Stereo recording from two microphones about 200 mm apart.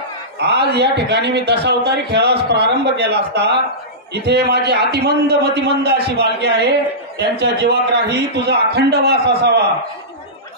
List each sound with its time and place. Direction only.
0.4 s a man's voice: 55° right (ahead or behind)